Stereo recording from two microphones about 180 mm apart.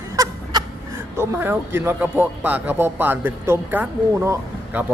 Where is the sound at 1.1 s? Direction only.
10° right (ahead or behind).